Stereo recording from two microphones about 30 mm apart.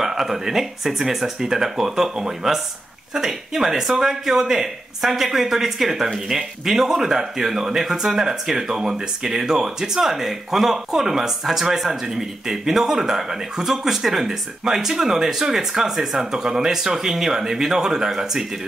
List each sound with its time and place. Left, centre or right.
0.0 s speech: centre